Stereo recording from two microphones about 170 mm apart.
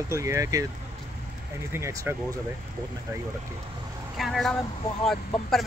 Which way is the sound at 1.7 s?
15° right (ahead or behind).